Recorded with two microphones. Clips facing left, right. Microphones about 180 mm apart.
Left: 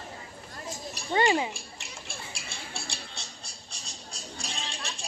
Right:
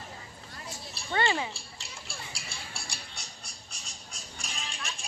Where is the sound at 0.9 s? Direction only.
15° left (ahead or behind).